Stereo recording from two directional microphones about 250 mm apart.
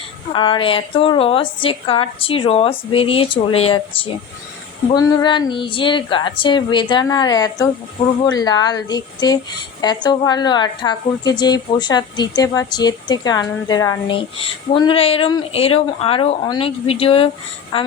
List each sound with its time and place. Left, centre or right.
0.3 s a woman's voice: centre